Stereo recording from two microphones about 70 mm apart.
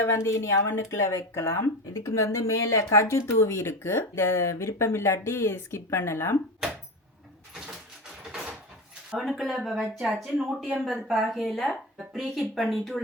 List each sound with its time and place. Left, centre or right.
0.0 s speech: left
9.0 s speech: centre